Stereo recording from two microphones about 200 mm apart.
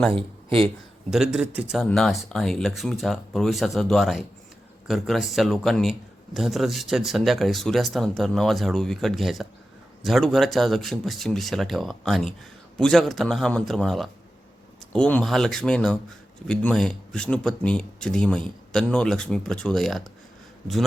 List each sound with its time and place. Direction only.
0.1 s speech: 25° right (ahead or behind)
1.1 s a man's voice: 5° right (ahead or behind)